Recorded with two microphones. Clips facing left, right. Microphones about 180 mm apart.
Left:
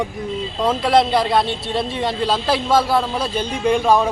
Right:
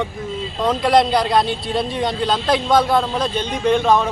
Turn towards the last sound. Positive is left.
turn(degrees=10)  # may be behind; listen again after turning